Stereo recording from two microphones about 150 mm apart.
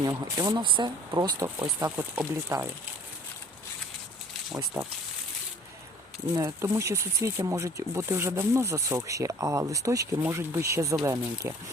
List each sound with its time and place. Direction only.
0.3 s speech: 30° right (ahead or behind)
6.3 s speech: 20° right (ahead or behind)